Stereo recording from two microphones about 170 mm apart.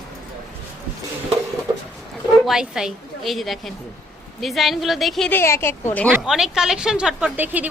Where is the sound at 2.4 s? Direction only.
5° right (ahead or behind).